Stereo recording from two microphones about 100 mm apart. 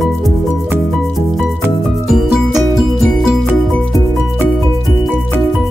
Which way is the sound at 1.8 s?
Centre (ahead or behind).